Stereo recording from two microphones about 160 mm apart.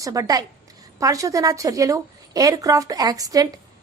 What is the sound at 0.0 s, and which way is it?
A woman's voice, 20° right (ahead or behind).